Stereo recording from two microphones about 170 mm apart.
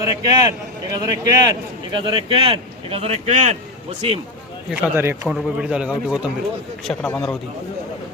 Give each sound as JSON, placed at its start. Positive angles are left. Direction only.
{"t": 0.0, "sound": "a man's voice", "side_deg": -20}
{"t": 4.7, "sound": "a man's voice", "side_deg": -10}
{"t": 6.8, "sound": "speech", "side_deg": 10}